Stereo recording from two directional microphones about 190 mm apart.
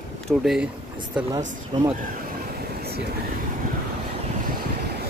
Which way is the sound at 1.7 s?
20° right (ahead or behind).